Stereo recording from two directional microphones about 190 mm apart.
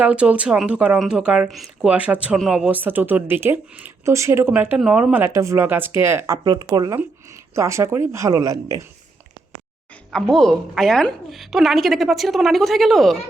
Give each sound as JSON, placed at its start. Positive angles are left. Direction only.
{"t": 0.0, "sound": "speech", "side_deg": -5}
{"t": 10.1, "sound": "a woman's voice", "side_deg": 0}